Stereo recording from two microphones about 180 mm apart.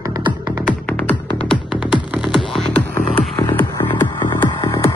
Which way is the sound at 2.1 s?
Centre (ahead or behind).